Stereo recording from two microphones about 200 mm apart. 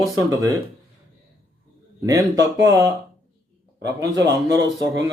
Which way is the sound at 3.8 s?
15° right (ahead or behind).